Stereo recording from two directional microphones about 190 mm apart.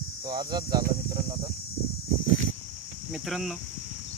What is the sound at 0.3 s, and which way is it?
Speech, 25° right (ahead or behind).